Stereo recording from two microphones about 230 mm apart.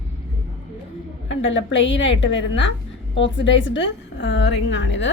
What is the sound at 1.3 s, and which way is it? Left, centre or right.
A woman's voice, left.